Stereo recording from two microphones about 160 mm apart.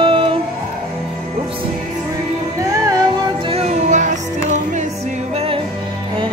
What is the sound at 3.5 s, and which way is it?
Music, 40° right (ahead or behind).